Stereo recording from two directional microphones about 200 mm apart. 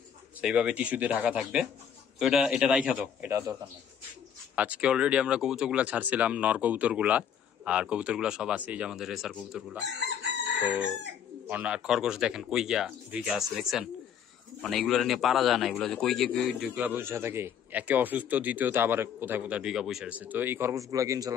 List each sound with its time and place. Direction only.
0.4 s speech: 5° right (ahead or behind)
4.6 s speech: 5° right (ahead or behind)
9.9 s chicken: 60° right (ahead or behind)
11.4 s a man's voice: 5° right (ahead or behind)